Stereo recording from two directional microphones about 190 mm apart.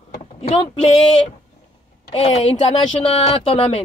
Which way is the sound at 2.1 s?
35° left (ahead or behind).